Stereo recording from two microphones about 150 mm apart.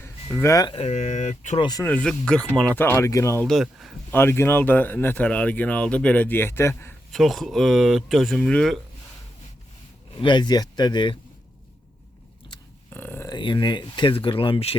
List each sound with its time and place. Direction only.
0.0 s a sound: 15° left (ahead or behind)
0.7 s speech: 45° left (ahead or behind)
1.5 s speech: 30° left (ahead or behind)
1.8 s speech: 10° left (ahead or behind)
3.4 s speech: centre (ahead or behind)
4.1 s speech: 15° left (ahead or behind)
7.1 s speech: centre (ahead or behind)
10.2 s speech: 30° left (ahead or behind)
12.9 s a sound: 10° left (ahead or behind)
13.3 s speech: 30° left (ahead or behind)